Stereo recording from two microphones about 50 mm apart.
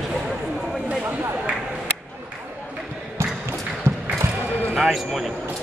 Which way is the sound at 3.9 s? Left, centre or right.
Right.